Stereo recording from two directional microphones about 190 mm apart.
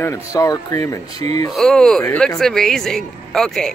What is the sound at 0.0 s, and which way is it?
Speech, 15° left (ahead or behind).